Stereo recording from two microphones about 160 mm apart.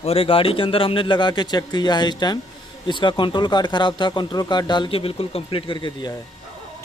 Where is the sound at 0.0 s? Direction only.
35° left (ahead or behind).